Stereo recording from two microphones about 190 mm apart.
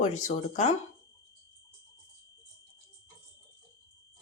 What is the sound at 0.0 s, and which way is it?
Speech, 40° left (ahead or behind).